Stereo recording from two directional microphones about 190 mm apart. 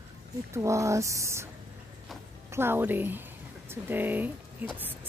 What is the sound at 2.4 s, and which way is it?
A woman's voice, 10° right (ahead or behind).